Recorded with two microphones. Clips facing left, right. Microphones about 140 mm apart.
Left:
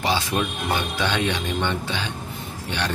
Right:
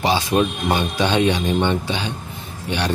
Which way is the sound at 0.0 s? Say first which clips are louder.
Right 5 dB; 20° right (ahead or behind).